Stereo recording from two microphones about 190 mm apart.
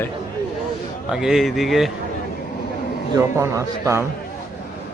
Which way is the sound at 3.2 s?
15° right (ahead or behind).